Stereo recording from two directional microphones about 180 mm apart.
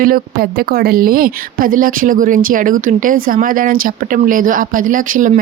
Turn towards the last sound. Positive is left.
turn(degrees=-45)  # may be behind; listen again after turning